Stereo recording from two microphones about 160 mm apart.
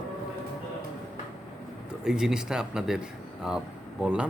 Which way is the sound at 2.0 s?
5° right (ahead or behind).